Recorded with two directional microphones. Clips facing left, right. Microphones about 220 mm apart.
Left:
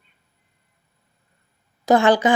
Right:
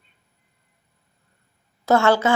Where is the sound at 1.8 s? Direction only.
15° left (ahead or behind).